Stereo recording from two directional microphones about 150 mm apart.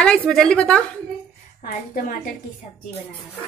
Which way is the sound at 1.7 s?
70° left (ahead or behind).